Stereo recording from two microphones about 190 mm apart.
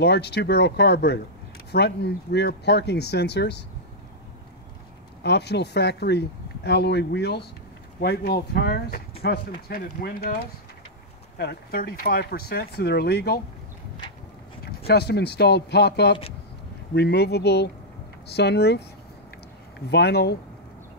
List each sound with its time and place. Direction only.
0.0 s speech: 60° left (ahead or behind)
5.2 s speech: 60° left (ahead or behind)
9.7 s speech: 50° left (ahead or behind)
11.3 s speech: 55° left (ahead or behind)
14.9 s speech: 60° left (ahead or behind)
19.9 s speech: 60° left (ahead or behind)